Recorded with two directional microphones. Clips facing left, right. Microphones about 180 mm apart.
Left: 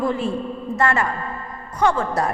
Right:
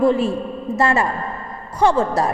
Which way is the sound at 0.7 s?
25° right (ahead or behind).